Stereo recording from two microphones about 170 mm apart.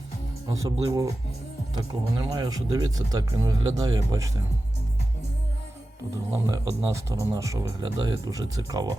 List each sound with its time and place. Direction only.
0.4 s speech: 20° right (ahead or behind)
6.3 s speech: 20° right (ahead or behind)